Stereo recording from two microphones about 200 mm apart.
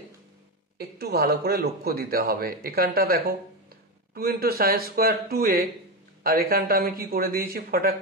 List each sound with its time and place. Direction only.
0.7 s speech: 55° right (ahead or behind)